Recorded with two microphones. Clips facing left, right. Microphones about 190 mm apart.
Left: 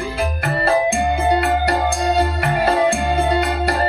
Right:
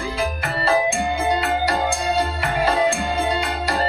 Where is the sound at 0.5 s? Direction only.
55° left (ahead or behind).